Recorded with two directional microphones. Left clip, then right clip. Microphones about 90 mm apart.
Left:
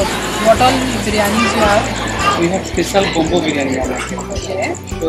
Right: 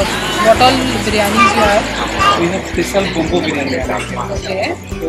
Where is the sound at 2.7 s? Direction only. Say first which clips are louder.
Left 2 dB; 20° left (ahead or behind).